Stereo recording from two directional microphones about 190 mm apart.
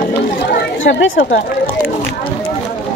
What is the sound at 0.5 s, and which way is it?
Chatter, 65° left (ahead or behind).